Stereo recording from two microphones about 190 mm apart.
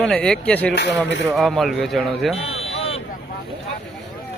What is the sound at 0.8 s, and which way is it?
Speech, 65° left (ahead or behind).